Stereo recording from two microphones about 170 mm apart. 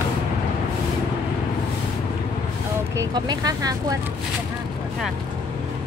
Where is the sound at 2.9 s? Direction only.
25° right (ahead or behind).